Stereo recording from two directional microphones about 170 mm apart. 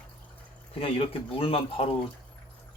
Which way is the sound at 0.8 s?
35° left (ahead or behind).